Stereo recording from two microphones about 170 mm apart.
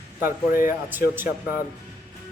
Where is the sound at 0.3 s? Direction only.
55° left (ahead or behind).